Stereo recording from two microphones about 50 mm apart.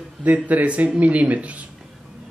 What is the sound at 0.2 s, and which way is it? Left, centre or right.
A man's voice, right.